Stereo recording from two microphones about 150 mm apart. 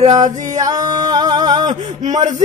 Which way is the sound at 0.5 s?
25° right (ahead or behind).